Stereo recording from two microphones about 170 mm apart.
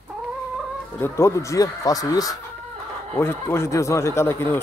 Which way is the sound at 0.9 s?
15° left (ahead or behind).